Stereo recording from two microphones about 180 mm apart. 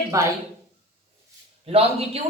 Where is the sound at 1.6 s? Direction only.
35° right (ahead or behind).